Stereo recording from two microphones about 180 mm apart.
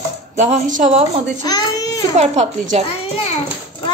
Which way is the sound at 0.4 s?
40° right (ahead or behind).